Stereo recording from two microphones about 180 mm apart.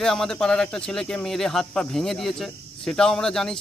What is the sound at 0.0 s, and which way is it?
Speech, 5° left (ahead or behind).